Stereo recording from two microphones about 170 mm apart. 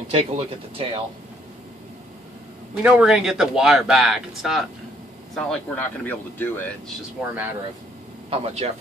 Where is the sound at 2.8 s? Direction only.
5° right (ahead or behind); by 6.9 s 10° left (ahead or behind).